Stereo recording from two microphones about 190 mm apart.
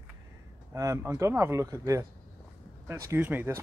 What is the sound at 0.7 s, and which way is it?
Speech, 15° right (ahead or behind).